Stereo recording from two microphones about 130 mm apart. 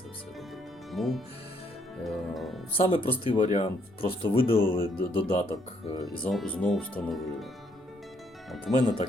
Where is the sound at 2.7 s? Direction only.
45° left (ahead or behind).